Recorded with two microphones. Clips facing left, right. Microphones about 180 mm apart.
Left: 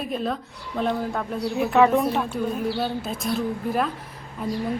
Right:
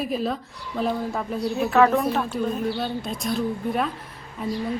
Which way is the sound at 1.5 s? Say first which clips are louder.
Left 1 dB; 15° left (ahead or behind).